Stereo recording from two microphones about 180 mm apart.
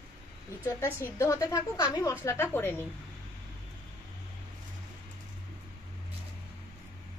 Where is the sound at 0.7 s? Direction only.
15° left (ahead or behind).